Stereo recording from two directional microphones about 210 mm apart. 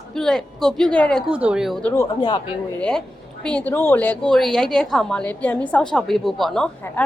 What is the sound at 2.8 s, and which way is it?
A woman's voice, 5° left (ahead or behind).